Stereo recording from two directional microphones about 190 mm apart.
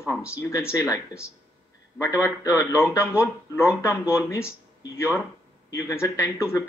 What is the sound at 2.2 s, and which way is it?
Speech, 15° left (ahead or behind).